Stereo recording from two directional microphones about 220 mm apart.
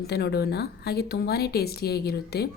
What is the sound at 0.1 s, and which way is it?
A woman's voice, 45° left (ahead or behind).